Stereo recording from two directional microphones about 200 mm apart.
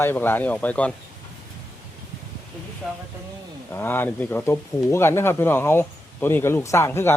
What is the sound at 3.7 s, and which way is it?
Speech, 10° left (ahead or behind).